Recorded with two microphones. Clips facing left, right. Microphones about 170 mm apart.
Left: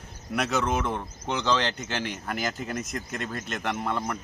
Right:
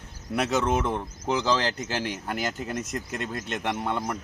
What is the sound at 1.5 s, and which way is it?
Speech, 35° right (ahead or behind).